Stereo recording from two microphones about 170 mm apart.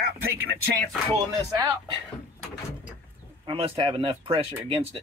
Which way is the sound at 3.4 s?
30° right (ahead or behind).